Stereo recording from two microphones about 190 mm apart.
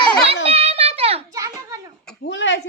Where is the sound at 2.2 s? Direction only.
75° left (ahead or behind).